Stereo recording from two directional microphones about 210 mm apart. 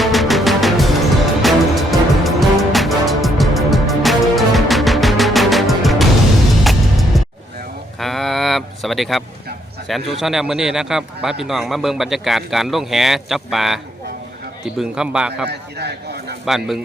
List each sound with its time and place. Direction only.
0.0 s music: centre (ahead or behind)
7.9 s a sound: centre (ahead or behind)
9.9 s a man's voice: centre (ahead or behind)
14.8 s a man's voice: 5° right (ahead or behind)
15.4 s speech: 50° right (ahead or behind)
16.5 s a man's voice: centre (ahead or behind)